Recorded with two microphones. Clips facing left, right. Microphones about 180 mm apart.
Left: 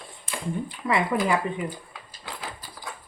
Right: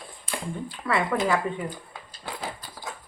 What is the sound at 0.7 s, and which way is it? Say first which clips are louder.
Speech: even; 15° left (ahead or behind).